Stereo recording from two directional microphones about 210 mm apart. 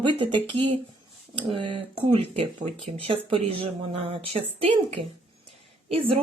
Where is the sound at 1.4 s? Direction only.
25° right (ahead or behind).